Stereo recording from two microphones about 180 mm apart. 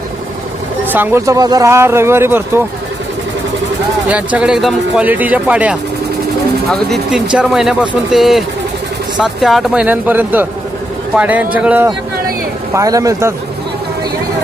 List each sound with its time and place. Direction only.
0.9 s speech: 10° right (ahead or behind)
4.1 s speech: 5° right (ahead or behind)